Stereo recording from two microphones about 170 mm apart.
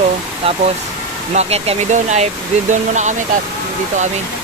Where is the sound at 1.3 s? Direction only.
40° right (ahead or behind).